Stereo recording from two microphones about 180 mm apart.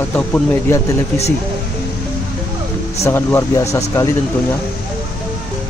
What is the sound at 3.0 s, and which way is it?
Speech, 15° left (ahead or behind).